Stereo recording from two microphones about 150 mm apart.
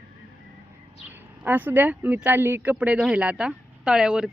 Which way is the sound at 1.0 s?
10° right (ahead or behind).